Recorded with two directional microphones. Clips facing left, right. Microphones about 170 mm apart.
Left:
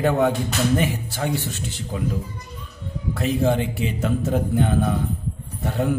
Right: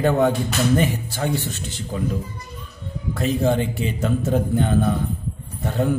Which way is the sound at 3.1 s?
5° left (ahead or behind).